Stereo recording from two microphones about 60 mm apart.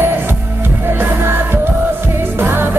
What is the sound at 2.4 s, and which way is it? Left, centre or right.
Music, right.